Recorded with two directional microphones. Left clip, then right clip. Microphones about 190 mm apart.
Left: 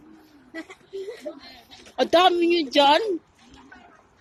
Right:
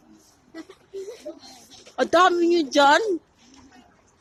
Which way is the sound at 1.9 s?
10° right (ahead or behind).